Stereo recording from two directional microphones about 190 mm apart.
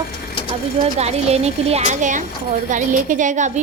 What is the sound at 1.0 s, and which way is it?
A woman's voice, 35° right (ahead or behind).